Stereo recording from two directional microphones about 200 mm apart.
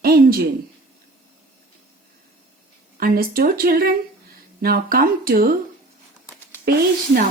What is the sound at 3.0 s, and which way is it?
Speech, 45° right (ahead or behind).